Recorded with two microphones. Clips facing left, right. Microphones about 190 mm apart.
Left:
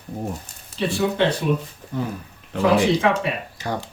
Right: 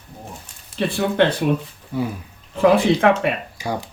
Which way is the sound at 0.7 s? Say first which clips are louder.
Right 3 dB; 60° right (ahead or behind).